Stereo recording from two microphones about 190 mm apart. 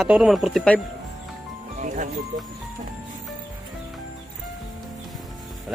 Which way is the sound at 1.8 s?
40° right (ahead or behind).